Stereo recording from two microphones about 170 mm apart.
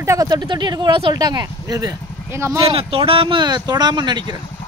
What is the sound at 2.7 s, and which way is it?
Speech, 35° right (ahead or behind).